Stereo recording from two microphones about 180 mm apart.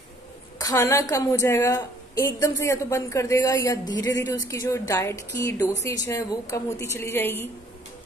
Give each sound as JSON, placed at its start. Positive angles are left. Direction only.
{"t": 0.6, "sound": "a woman's voice", "side_deg": 20}